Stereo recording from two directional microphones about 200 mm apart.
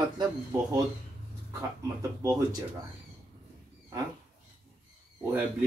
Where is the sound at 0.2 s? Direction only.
20° right (ahead or behind).